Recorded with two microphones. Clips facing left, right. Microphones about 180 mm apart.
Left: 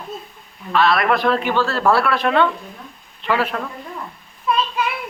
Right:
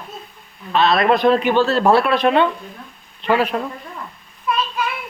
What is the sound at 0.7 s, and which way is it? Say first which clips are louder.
Speech: right 2 dB; 20° right (ahead or behind).